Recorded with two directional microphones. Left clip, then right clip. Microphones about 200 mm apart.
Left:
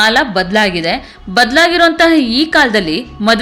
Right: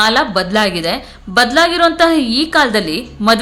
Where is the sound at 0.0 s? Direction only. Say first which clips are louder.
Left 2 dB; 10° left (ahead or behind).